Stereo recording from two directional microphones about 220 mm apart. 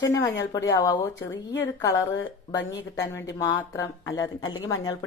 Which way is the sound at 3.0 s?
15° left (ahead or behind).